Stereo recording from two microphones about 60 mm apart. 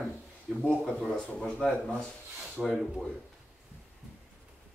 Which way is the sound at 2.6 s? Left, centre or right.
Centre.